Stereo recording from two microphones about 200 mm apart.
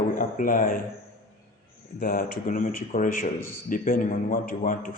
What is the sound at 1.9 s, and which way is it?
A man's voice, 45° left (ahead or behind).